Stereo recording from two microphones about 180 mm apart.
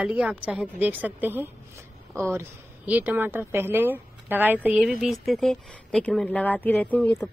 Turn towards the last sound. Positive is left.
turn(degrees=10)  # may be behind; listen again after turning